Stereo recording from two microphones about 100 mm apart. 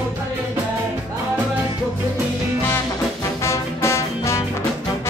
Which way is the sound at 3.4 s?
30° left (ahead or behind).